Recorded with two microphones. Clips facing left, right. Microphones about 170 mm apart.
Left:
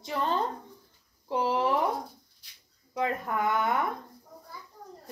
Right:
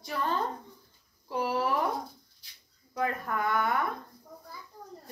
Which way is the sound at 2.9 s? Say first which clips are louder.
Left 2 dB; 20° left (ahead or behind).